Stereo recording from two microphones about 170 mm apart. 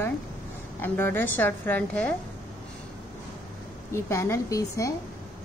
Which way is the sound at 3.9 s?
15° left (ahead or behind).